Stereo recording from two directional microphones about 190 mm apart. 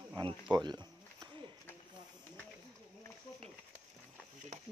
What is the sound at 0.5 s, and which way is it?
Insect, 20° right (ahead or behind).